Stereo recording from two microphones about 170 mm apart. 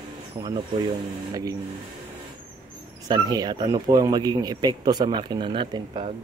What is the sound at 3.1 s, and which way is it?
Speech, 25° right (ahead or behind).